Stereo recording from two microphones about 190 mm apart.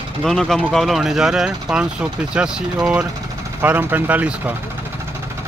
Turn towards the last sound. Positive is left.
turn(degrees=-5)  # may be behind; listen again after turning